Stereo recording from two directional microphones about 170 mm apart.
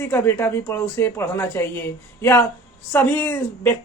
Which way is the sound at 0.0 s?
15° left (ahead or behind).